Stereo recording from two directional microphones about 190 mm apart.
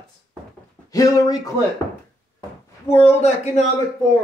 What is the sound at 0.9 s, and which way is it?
Speech, 20° left (ahead or behind).